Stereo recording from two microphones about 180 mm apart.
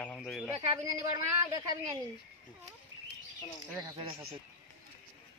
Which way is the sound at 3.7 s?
20° right (ahead or behind).